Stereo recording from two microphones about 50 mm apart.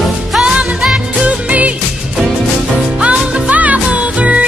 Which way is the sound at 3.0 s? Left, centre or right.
Right.